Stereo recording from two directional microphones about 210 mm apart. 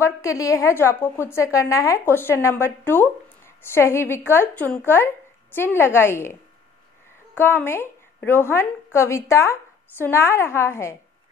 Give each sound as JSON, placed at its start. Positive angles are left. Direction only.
{"t": 0.0, "sound": "a woman's voice", "side_deg": 15}
{"t": 7.3, "sound": "a woman's voice", "side_deg": 10}